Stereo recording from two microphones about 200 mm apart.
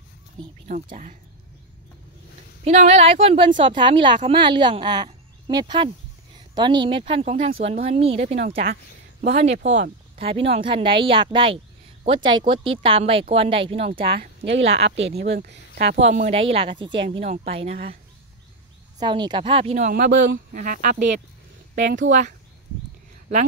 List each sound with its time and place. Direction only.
2.6 s speech: 35° right (ahead or behind)
8.5 s speech: 50° right (ahead or behind)
9.2 s speech: 35° right (ahead or behind)
14.1 s speech: 55° right (ahead or behind)
16.0 s speech: 35° right (ahead or behind)
18.9 s speech: 20° right (ahead or behind)
19.9 s speech: 55° right (ahead or behind)
20.5 s speech: 45° right (ahead or behind)
21.7 s speech: 60° right (ahead or behind)
22.0 s speech: 40° right (ahead or behind)